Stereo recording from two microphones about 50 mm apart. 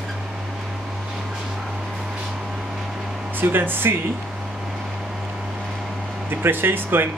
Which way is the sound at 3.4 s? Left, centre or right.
Right.